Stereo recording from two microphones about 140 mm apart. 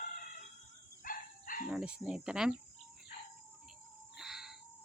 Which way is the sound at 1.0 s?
80° left.